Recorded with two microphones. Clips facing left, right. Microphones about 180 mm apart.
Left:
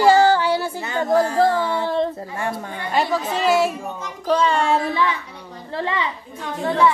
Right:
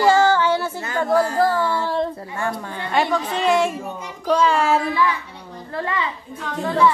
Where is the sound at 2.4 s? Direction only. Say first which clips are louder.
Right 2 dB; 20° left (ahead or behind).